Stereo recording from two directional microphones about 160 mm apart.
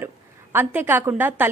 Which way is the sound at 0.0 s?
15° right (ahead or behind).